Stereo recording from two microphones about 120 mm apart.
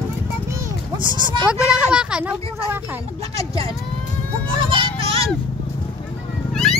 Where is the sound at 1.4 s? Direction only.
5° right (ahead or behind).